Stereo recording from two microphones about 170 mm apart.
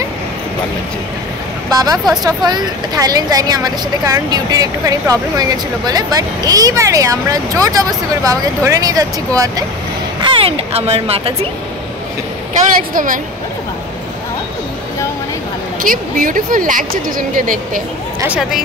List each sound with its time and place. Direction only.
1.7 s a woman's voice: 20° right (ahead or behind)
10.2 s speech: 35° right (ahead or behind)
12.9 s speech: 50° right (ahead or behind)
15.8 s speech: 55° right (ahead or behind)
18.2 s speech: 5° right (ahead or behind)